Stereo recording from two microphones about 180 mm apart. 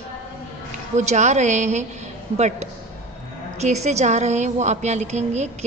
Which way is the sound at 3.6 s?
40° right (ahead or behind).